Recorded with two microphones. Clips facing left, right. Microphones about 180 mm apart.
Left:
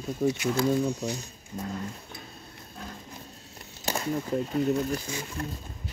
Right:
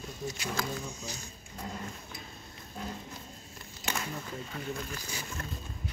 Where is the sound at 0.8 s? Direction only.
60° left (ahead or behind).